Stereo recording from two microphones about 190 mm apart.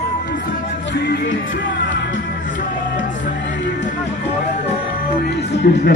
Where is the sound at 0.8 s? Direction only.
65° left (ahead or behind).